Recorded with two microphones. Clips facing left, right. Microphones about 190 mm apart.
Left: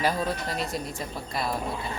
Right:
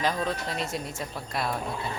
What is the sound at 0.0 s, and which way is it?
Speech, 5° left (ahead or behind).